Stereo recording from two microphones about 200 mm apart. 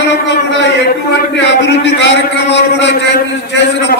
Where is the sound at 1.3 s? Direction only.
60° left (ahead or behind).